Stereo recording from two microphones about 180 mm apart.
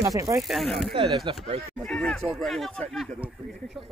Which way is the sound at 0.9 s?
30° right (ahead or behind).